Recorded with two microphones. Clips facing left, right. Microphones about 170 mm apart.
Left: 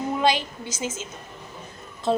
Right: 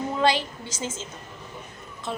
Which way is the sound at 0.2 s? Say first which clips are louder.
Right 1 dB; 15° left (ahead or behind).